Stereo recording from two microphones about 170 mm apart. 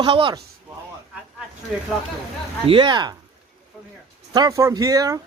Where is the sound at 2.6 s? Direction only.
30° right (ahead or behind).